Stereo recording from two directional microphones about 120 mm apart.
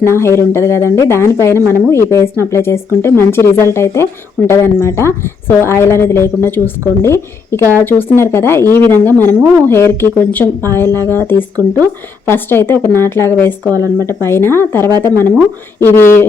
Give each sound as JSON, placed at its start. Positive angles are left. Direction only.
{"t": 0.1, "sound": "a woman's voice", "side_deg": 20}